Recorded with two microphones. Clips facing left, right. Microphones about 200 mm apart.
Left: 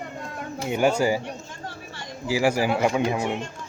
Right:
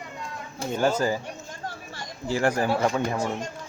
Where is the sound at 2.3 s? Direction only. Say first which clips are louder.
Left 2 dB; 5° left (ahead or behind).